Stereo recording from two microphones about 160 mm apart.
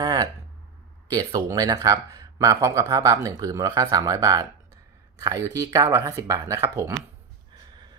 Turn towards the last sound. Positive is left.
turn(degrees=-20)  # may be behind; listen again after turning